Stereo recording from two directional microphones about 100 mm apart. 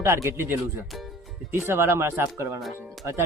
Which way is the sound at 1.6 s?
25° right (ahead or behind).